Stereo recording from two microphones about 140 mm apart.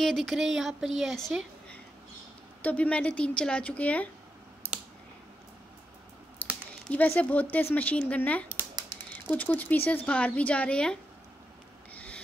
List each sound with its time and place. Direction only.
0.0 s a woman's voice: centre (ahead or behind)
6.9 s speech: 10° left (ahead or behind)
11.9 s a sound: 10° left (ahead or behind)